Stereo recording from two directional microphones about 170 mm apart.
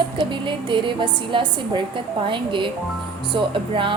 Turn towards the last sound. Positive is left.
turn(degrees=-30)  # may be behind; listen again after turning